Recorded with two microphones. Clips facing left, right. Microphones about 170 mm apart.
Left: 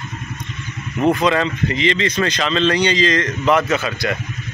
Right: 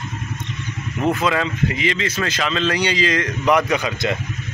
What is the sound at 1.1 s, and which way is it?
Speech, 5° right (ahead or behind).